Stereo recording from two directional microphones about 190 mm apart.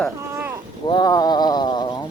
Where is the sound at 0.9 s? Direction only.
20° left (ahead or behind).